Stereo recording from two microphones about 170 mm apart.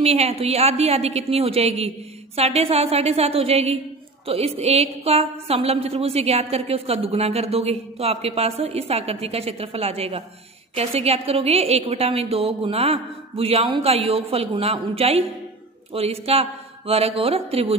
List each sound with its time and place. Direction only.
0.0 s a woman's voice: 40° right (ahead or behind)